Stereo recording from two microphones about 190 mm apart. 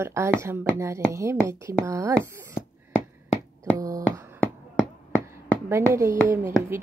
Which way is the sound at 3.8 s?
20° right (ahead or behind).